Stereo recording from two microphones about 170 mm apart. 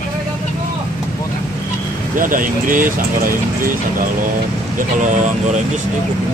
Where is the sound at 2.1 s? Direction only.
55° right (ahead or behind).